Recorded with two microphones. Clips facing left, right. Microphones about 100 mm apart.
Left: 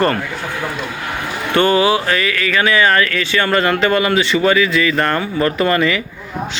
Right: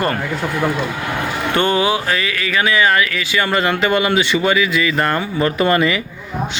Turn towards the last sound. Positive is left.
turn(degrees=-20)  # may be behind; listen again after turning